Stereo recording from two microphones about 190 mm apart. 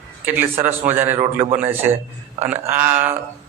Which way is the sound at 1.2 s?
25° right (ahead or behind).